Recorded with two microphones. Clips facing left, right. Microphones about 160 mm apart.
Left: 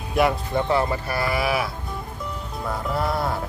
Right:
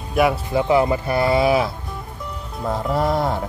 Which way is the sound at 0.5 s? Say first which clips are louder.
Right 5 dB; 15° right (ahead or behind).